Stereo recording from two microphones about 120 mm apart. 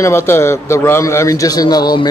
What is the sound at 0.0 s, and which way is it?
A man's voice, 20° left (ahead or behind).